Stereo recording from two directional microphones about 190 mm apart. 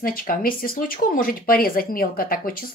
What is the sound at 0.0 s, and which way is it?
Speech, 50° left (ahead or behind).